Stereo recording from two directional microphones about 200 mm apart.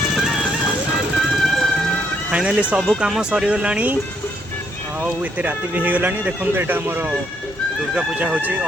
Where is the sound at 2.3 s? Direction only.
5° right (ahead or behind).